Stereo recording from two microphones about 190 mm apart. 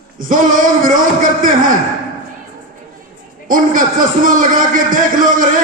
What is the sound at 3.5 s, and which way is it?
A man's voice, 45° right (ahead or behind).